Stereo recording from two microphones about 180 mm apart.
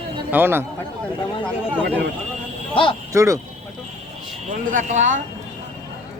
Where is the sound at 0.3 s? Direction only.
10° right (ahead or behind).